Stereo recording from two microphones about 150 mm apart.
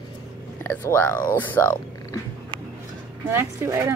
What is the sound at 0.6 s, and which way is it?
Speech, 15° left (ahead or behind).